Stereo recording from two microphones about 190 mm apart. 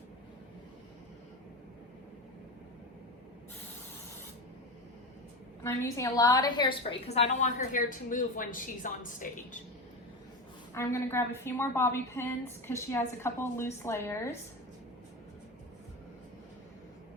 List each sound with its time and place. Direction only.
5.6 s a woman's voice: 15° left (ahead or behind)
7.1 s a woman's voice: 35° left (ahead or behind)
10.8 s a woman's voice: 15° left (ahead or behind)